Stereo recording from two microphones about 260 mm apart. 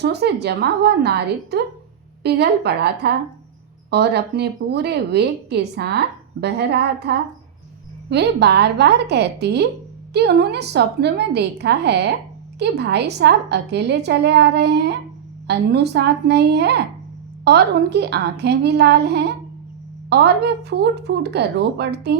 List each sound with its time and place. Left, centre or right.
0.0 s a woman's voice: right